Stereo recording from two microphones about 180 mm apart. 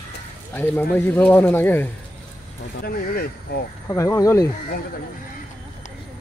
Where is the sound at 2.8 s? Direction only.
60° left (ahead or behind).